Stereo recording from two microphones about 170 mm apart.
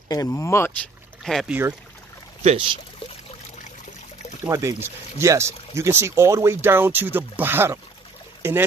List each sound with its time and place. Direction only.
0.1 s speech: 20° left (ahead or behind)
1.2 s speech: centre (ahead or behind)
2.4 s speech: 30° right (ahead or behind)
4.5 s speech: 15° right (ahead or behind)